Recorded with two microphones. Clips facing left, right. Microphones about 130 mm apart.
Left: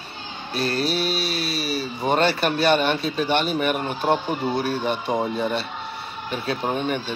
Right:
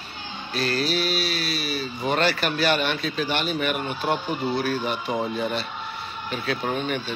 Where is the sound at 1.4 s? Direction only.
35° left (ahead or behind).